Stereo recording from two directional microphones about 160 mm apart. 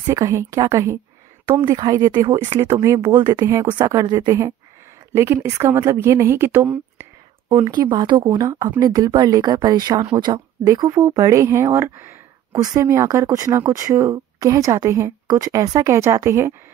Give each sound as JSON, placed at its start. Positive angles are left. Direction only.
{"t": 0.1, "sound": "a woman's voice", "side_deg": -20}